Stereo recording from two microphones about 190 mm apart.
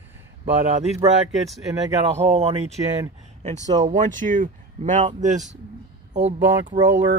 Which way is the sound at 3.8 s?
40° right (ahead or behind).